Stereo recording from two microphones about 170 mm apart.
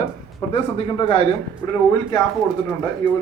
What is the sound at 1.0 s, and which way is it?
Speech, 30° left (ahead or behind).